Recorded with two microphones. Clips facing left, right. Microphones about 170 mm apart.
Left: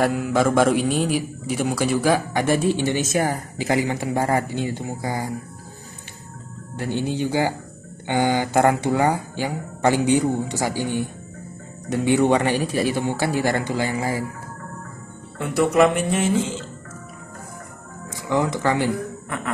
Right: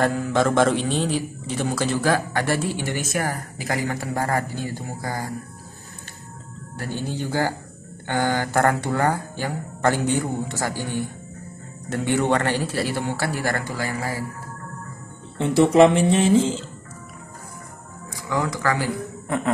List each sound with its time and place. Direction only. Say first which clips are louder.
0.0 s a man's voice: left 1 dB; 10° left (ahead or behind)
6.8 s a man's voice: left 5 dB; 20° left (ahead or behind)
15.3 s speech: right 3 dB; 30° right (ahead or behind)
18.1 s speech: left 3 dB; 20° left (ahead or behind)
19.2 s a sound: right 5 dB; 30° right (ahead or behind)